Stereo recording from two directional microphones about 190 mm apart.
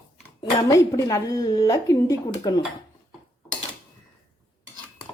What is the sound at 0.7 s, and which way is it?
A woman's voice, 15° left (ahead or behind).